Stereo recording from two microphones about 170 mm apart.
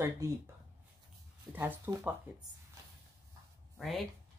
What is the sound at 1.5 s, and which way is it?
Speech, 10° right (ahead or behind).